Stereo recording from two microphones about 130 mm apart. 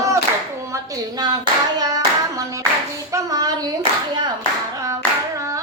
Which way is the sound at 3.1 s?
30° right (ahead or behind).